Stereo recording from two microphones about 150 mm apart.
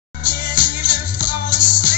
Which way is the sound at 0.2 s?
65° left (ahead or behind).